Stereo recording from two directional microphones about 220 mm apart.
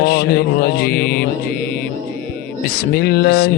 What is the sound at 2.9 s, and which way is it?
Mantra, 45° left (ahead or behind).